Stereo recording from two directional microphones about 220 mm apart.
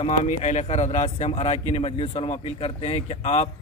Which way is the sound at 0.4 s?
30° left (ahead or behind).